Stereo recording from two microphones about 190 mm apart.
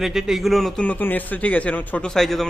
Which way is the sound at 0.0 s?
Centre (ahead or behind).